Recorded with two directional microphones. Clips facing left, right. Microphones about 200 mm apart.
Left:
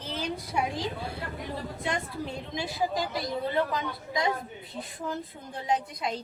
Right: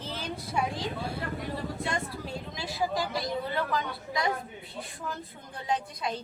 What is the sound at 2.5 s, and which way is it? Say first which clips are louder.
A woman's voice: left 1 dB; 20° left (ahead or behind).